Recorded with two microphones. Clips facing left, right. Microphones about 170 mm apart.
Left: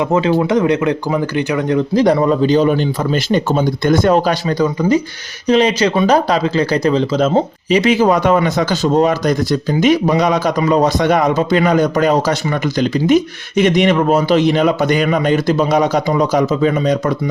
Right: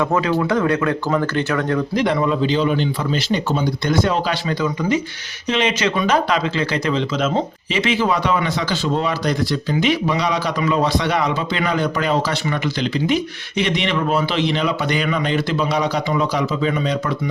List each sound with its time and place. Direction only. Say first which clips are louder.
0.0 s speech: left 4 dB; 25° left (ahead or behind)
2.0 s speech: left 7 dB; 35° left (ahead or behind)